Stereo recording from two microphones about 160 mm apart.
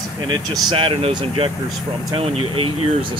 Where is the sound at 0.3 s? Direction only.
30° right (ahead or behind).